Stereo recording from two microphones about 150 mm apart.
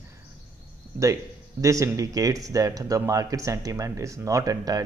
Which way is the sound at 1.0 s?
20° right (ahead or behind).